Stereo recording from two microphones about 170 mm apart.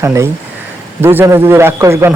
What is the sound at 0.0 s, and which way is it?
A man's voice, 15° right (ahead or behind).